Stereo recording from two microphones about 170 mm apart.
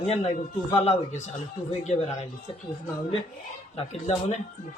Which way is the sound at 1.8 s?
40° left (ahead or behind).